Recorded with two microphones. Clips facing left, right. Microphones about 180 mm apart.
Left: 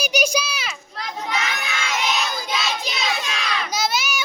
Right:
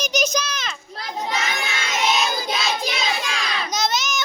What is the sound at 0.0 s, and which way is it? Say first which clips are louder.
Speech: left 1 dB; 10° left (ahead or behind).